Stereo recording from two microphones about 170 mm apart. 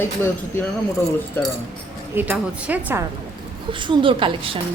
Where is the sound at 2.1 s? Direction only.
10° right (ahead or behind).